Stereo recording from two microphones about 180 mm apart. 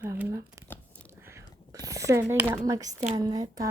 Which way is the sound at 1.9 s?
20° right (ahead or behind).